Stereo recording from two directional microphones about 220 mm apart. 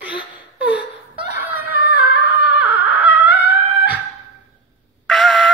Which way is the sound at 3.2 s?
5° right (ahead or behind).